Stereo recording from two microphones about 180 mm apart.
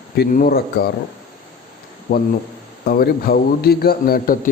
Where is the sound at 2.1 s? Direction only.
55° left (ahead or behind).